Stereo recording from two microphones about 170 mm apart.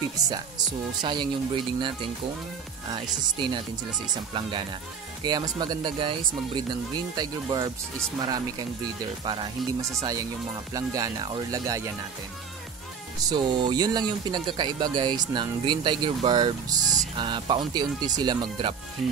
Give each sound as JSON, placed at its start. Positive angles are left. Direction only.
{"t": 0.2, "sound": "speech", "side_deg": -25}
{"t": 5.2, "sound": "speech", "side_deg": -25}
{"t": 13.2, "sound": "speech", "side_deg": -25}